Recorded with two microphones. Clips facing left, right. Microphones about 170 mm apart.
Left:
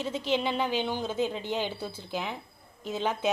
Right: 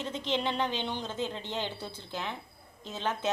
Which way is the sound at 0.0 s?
10° left (ahead or behind).